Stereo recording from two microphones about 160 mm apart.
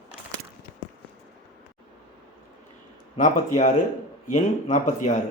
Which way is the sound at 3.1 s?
50° left (ahead or behind).